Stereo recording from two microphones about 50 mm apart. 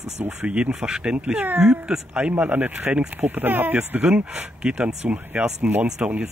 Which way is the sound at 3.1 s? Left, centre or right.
Right.